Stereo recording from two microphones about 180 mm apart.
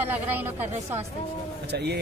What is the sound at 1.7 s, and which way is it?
Speech, 65° right (ahead or behind).